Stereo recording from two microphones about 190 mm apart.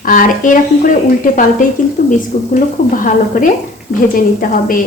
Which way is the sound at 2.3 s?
40° left (ahead or behind).